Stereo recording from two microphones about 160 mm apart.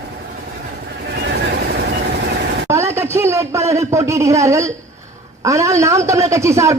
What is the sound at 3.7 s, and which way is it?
A man's voice, 20° right (ahead or behind).